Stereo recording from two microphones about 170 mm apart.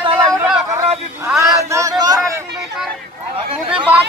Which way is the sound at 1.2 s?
15° right (ahead or behind).